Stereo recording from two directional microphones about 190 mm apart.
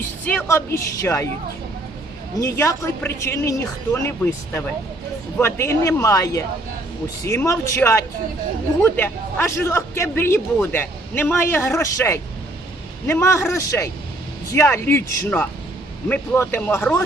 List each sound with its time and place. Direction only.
0.3 s a man's voice: 10° left (ahead or behind)
2.4 s a man's voice: 15° left (ahead or behind)
5.4 s a man's voice: 15° left (ahead or behind)